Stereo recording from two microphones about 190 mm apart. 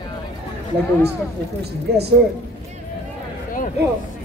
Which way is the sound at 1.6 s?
60° right (ahead or behind).